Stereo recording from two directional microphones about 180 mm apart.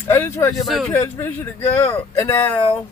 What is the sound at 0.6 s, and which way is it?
Speech, centre (ahead or behind).